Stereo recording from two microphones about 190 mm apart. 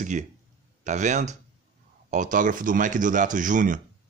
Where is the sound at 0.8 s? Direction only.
40° right (ahead or behind).